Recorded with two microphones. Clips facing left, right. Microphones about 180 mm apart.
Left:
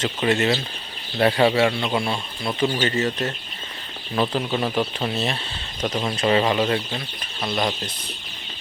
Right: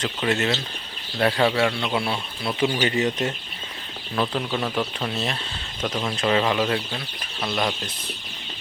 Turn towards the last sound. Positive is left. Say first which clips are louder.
# left 1 dB
turn(degrees=10)  # may be behind; listen again after turning